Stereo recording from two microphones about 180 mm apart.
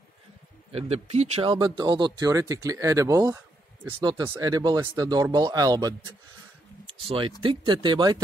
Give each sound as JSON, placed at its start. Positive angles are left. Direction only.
{"t": 0.7, "sound": "speech", "side_deg": -35}
{"t": 7.1, "sound": "speech", "side_deg": -30}